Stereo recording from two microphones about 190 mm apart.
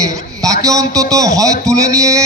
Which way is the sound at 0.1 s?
20° right (ahead or behind).